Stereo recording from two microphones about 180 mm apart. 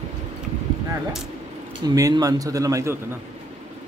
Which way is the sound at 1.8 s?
20° right (ahead or behind).